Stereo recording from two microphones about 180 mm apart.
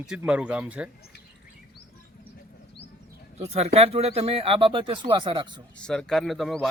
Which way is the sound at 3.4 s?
35° right (ahead or behind).